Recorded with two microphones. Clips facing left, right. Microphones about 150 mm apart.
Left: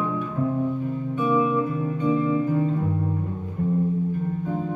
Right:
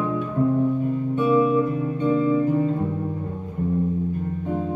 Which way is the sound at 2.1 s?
30° right (ahead or behind).